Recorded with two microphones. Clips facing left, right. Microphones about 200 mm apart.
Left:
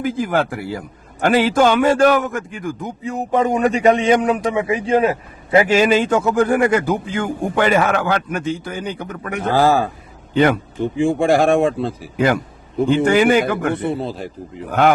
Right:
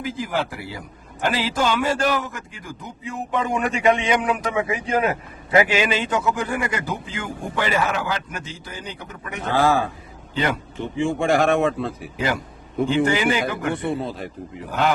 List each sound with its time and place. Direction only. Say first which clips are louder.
0.0 s a man's voice: left 7 dB; 50° left (ahead or behind)
9.5 s speech: left 4 dB; 35° left (ahead or behind)
10.3 s speech: left 9 dB; 55° left (ahead or behind)
10.8 s speech: left 6 dB; 35° left (ahead or behind)
12.1 s a man's voice: left 9 dB; 55° left (ahead or behind)